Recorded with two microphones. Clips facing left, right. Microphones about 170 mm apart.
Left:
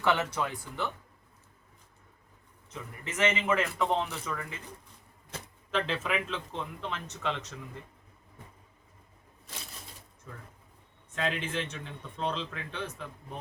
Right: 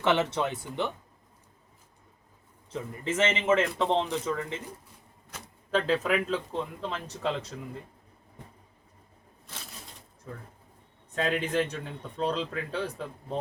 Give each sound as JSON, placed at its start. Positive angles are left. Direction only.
{"t": 0.0, "sound": "a man's voice", "side_deg": -25}
{"t": 2.6, "sound": "a man's voice", "side_deg": -30}
{"t": 5.7, "sound": "a man's voice", "side_deg": -40}
{"t": 11.1, "sound": "a man's voice", "side_deg": -40}